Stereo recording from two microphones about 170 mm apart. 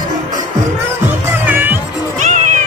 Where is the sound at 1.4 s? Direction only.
10° right (ahead or behind).